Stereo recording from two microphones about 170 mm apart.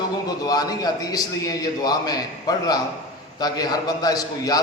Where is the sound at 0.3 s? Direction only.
20° left (ahead or behind).